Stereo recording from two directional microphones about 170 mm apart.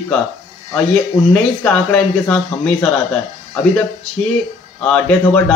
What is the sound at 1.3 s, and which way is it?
Speech, 5° left (ahead or behind).